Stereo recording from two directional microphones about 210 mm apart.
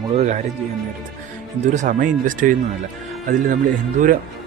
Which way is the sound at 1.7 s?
35° right (ahead or behind).